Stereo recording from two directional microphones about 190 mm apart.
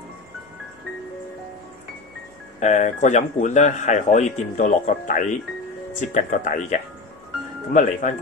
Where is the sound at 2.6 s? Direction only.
40° left (ahead or behind).